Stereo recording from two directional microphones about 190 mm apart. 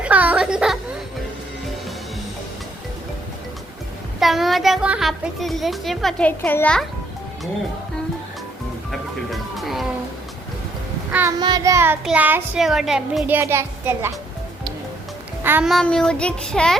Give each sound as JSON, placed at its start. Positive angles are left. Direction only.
{"t": 0.0, "sound": "music", "side_deg": -10}
{"t": 4.2, "sound": "a child's voice", "side_deg": 0}
{"t": 8.9, "sound": "music", "side_deg": 0}
{"t": 11.1, "sound": "child singing", "side_deg": -10}
{"t": 11.3, "sound": "a child's voice", "side_deg": -20}
{"t": 15.4, "sound": "a child's voice", "side_deg": -5}